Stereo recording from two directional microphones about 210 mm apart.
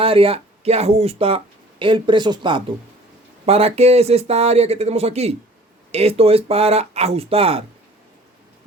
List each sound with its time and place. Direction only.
0.0 s speech: 25° right (ahead or behind)